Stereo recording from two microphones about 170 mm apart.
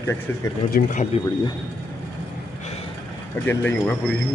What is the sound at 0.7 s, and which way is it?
Speech, 60° left (ahead or behind).